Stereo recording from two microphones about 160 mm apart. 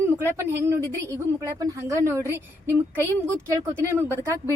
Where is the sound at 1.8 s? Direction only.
15° right (ahead or behind).